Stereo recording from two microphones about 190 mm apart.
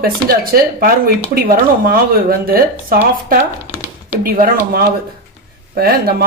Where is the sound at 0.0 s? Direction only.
50° right (ahead or behind).